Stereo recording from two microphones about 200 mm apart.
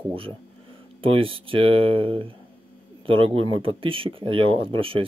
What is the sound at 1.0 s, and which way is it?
Speech, 25° right (ahead or behind).